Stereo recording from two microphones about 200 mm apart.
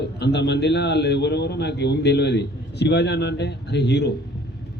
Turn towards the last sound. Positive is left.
turn(degrees=55)  # may be behind; listen again after turning